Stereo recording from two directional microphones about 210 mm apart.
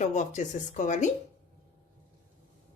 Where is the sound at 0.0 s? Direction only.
35° left (ahead or behind).